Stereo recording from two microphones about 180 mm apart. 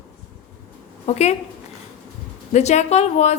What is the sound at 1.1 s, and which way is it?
Speech, 35° left (ahead or behind).